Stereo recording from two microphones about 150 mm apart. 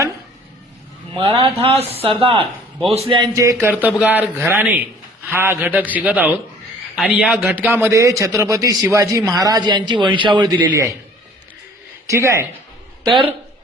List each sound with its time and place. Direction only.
1.1 s a man's voice: 35° right (ahead or behind)
3.2 s a man's voice: 25° right (ahead or behind)
3.7 s a man's voice: 10° right (ahead or behind); by 10.5 s 30° right (ahead or behind)
10.5 s a man's voice: 10° right (ahead or behind)
12.0 s a man's voice: 20° right (ahead or behind)